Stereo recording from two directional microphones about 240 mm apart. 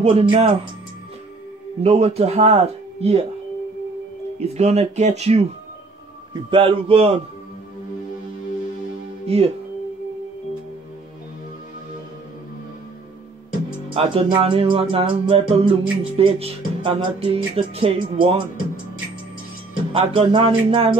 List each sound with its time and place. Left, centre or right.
0.0 s music: right
1.8 s music: right
4.4 s music: right
6.5 s music: right
9.3 s music: right
13.9 s music: right
19.9 s music: right